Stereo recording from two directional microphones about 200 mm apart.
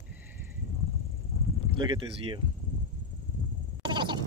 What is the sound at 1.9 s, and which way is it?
Speech, 25° right (ahead or behind).